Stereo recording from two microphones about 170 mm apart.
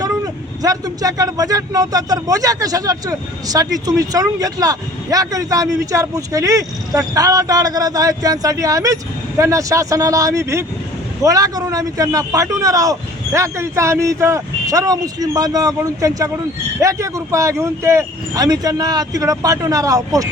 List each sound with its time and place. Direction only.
0.6 s a man's voice: 20° right (ahead or behind)